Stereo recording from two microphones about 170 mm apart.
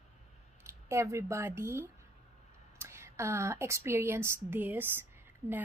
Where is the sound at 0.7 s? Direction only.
15° right (ahead or behind).